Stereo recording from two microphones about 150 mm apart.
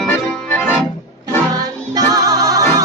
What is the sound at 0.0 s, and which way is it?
Organ, 10° left (ahead or behind).